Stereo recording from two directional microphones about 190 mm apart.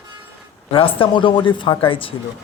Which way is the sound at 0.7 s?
30° left (ahead or behind).